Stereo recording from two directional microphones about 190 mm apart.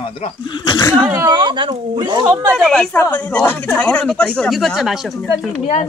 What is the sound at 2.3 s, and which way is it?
Speech, 10° right (ahead or behind).